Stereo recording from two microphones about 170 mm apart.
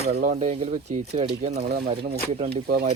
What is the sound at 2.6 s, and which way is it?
Speech, 65° right (ahead or behind).